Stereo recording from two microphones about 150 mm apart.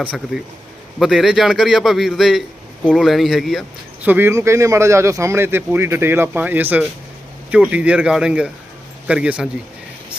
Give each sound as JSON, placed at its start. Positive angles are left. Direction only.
{"t": 0.9, "sound": "a man's voice", "side_deg": 0}
{"t": 4.0, "sound": "speech", "side_deg": -15}